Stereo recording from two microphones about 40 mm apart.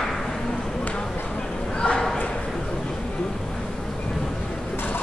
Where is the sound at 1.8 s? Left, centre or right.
Left.